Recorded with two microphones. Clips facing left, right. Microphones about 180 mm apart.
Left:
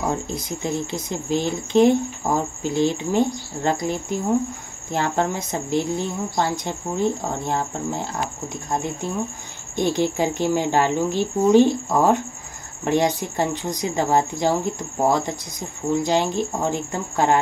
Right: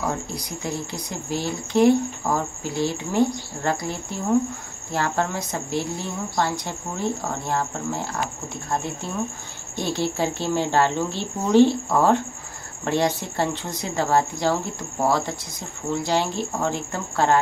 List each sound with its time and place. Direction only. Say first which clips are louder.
0.0 s speech: left 3 dB; 20° left (ahead or behind)